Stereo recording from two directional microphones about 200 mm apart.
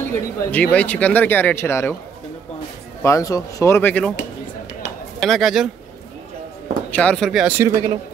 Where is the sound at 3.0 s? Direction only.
15° left (ahead or behind).